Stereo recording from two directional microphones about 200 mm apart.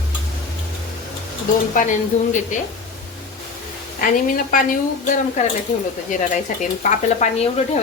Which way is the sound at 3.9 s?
45° left (ahead or behind).